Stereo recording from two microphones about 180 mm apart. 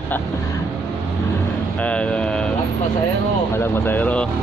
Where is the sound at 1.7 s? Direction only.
5° left (ahead or behind).